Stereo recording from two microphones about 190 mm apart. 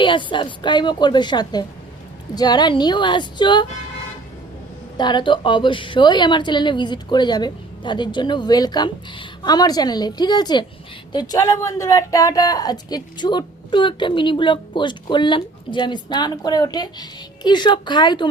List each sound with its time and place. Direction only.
0.0 s speech: 25° left (ahead or behind)
4.9 s speech: 25° left (ahead or behind)